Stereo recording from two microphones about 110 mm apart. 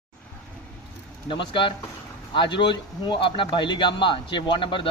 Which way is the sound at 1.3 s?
50° left (ahead or behind).